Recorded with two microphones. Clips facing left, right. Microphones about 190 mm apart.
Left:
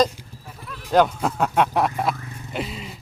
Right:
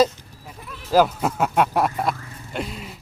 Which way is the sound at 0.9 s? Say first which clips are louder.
Even; 5° right (ahead or behind).